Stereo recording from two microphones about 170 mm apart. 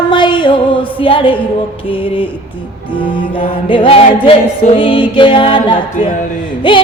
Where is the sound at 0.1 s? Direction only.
25° left (ahead or behind).